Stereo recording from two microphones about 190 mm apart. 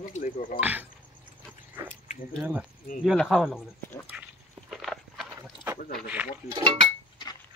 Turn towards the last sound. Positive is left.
turn(degrees=-25)  # may be behind; listen again after turning